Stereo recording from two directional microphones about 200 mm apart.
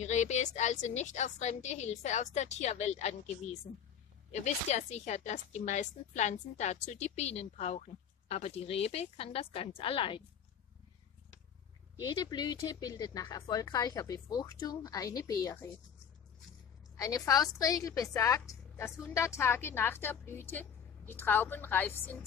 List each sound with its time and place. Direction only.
0.0 s speech: 35° left (ahead or behind)
12.0 s speech: 20° left (ahead or behind)
17.0 s a woman's voice: 15° left (ahead or behind)